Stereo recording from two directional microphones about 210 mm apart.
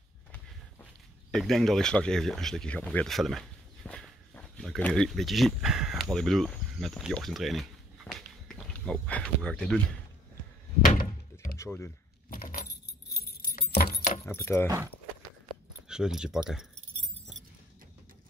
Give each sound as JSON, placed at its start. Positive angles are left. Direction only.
{"t": 1.3, "sound": "speech", "side_deg": 0}
{"t": 11.5, "sound": "speech", "side_deg": 15}
{"t": 12.3, "sound": "keys jangling", "side_deg": 45}
{"t": 14.2, "sound": "speech", "side_deg": 10}
{"t": 15.9, "sound": "speech", "side_deg": -5}